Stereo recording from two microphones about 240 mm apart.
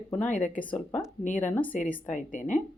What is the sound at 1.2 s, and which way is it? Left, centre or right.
Speech, left.